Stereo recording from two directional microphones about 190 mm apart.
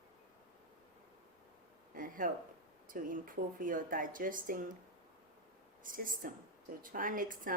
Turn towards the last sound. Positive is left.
turn(degrees=-45)  # may be behind; listen again after turning